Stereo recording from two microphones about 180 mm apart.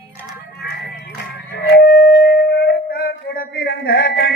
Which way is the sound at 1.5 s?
60° left (ahead or behind).